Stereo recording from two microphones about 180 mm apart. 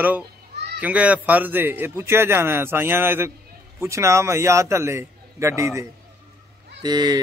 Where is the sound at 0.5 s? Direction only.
70° right (ahead or behind).